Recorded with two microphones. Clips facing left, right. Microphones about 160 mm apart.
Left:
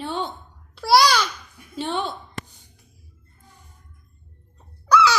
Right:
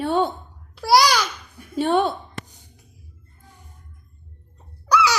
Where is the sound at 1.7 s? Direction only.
55° right (ahead or behind).